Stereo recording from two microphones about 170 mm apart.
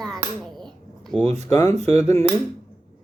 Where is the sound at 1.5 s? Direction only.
20° left (ahead or behind).